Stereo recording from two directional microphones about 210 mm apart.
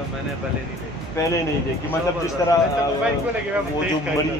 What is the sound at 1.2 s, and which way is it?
Speech, 15° left (ahead or behind).